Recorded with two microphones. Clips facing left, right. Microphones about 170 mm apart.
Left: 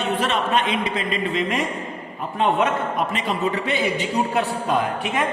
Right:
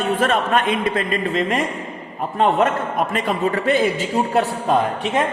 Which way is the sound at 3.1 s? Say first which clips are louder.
Right 3 dB; 50° right (ahead or behind).